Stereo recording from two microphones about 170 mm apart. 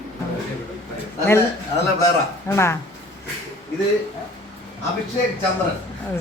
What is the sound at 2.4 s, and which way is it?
Speech, 15° left (ahead or behind).